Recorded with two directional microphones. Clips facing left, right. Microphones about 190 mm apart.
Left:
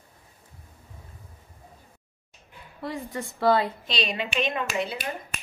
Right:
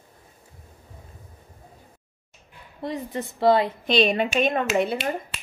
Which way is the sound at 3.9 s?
55° right (ahead or behind).